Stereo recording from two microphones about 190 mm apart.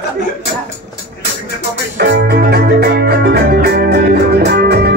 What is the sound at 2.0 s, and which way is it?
Music, 60° right (ahead or behind).